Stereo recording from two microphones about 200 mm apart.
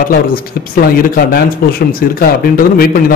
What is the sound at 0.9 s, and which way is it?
A man's voice, 50° left (ahead or behind).